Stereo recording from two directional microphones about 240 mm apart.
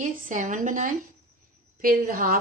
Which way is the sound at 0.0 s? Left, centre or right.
Right.